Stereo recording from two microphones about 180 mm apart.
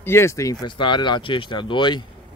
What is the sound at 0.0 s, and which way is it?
Speech, 15° left (ahead or behind).